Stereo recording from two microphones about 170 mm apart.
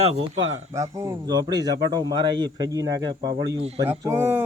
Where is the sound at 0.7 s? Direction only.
20° right (ahead or behind).